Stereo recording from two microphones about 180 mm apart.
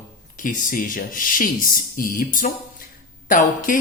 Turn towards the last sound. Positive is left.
turn(degrees=45)  # may be behind; listen again after turning